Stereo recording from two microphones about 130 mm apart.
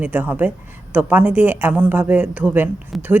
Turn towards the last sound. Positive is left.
turn(degrees=0)  # may be behind; listen again after turning